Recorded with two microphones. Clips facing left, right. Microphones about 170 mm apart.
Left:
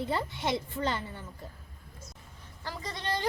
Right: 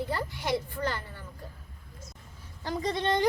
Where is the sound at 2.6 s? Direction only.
20° right (ahead or behind).